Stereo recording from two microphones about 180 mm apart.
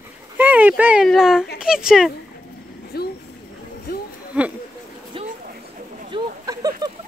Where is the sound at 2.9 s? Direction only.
60° left (ahead or behind).